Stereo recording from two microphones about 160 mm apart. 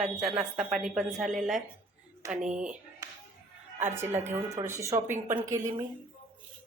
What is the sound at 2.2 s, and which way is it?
Speech, 20° right (ahead or behind).